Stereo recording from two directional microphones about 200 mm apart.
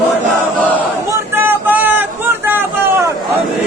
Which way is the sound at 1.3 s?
10° right (ahead or behind).